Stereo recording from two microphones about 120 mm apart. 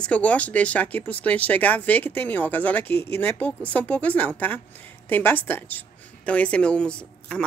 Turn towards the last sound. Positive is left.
turn(degrees=10)  # may be behind; listen again after turning